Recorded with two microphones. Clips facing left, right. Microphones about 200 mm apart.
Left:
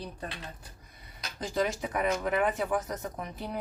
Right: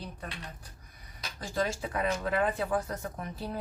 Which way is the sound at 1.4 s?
20° left (ahead or behind).